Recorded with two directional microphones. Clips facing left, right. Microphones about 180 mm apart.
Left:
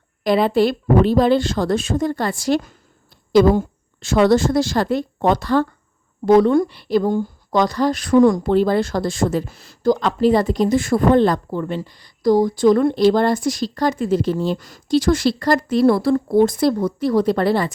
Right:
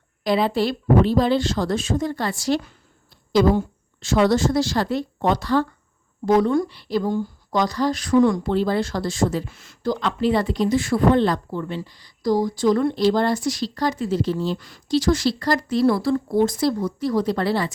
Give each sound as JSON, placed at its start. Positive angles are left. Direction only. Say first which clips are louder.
{"t": 0.3, "sound": "a woman's voice", "louder": "left 4 dB", "side_deg": 55}
{"t": 6.2, "sound": "speech", "louder": "left 5 dB", "side_deg": 65}
{"t": 9.5, "sound": "speech", "louder": "left 7 dB", "side_deg": 35}